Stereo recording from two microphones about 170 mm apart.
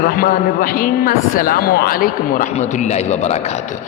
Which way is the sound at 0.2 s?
55° left (ahead or behind).